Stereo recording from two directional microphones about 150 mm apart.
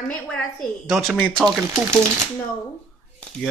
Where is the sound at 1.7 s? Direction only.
20° right (ahead or behind).